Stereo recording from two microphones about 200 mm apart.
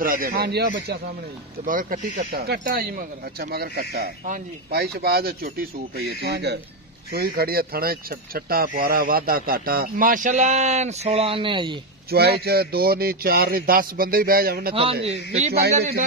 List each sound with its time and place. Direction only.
0.0 s speech: 45° right (ahead or behind)
1.7 s speech: 45° right (ahead or behind); by 11.8 s 25° right (ahead or behind)
12.1 s speech: 50° right (ahead or behind)
14.7 s a man's voice: 25° right (ahead or behind)